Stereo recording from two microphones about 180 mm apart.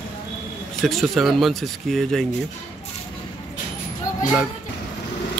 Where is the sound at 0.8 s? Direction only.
Centre (ahead or behind).